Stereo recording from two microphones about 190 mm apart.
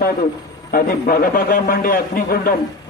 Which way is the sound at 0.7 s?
50° left (ahead or behind).